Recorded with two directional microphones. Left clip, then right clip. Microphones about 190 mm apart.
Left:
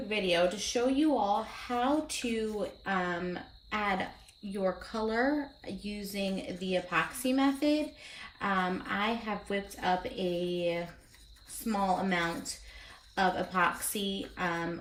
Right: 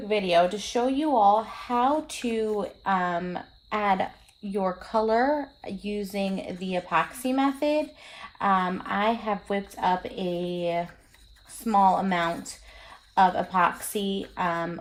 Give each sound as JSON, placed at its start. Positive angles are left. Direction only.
{"t": 0.1, "sound": "speech", "side_deg": -55}